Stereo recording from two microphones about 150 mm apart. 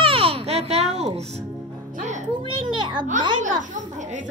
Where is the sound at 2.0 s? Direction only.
55° right (ahead or behind).